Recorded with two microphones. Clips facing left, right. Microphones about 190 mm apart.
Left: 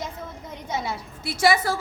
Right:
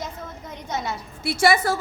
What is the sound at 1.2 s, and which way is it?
Speech, 60° right (ahead or behind).